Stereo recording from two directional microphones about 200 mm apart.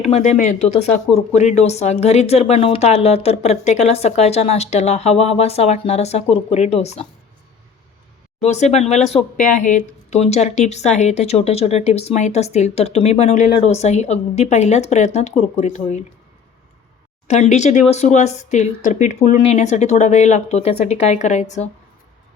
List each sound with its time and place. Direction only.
0.0 s speech: 35° left (ahead or behind)
8.4 s speech: 35° left (ahead or behind)
17.2 s speech: 35° left (ahead or behind)